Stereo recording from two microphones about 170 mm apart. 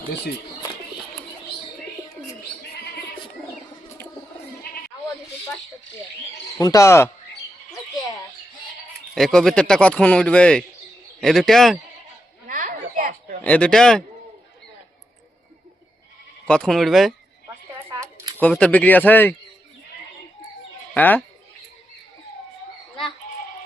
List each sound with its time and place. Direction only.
6.6 s speech: 20° left (ahead or behind)
9.1 s speech: centre (ahead or behind)
12.5 s a sound: 55° right (ahead or behind)
13.4 s speech: 5° left (ahead or behind)
16.5 s speech: 5° left (ahead or behind)
18.3 s speech: 5° left (ahead or behind)
20.9 s speech: 10° left (ahead or behind)